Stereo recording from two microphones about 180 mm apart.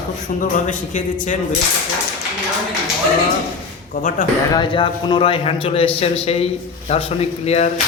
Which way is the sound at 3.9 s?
45° left (ahead or behind).